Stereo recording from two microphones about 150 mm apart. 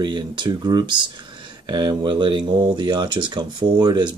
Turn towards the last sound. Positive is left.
turn(degrees=-30)  # may be behind; listen again after turning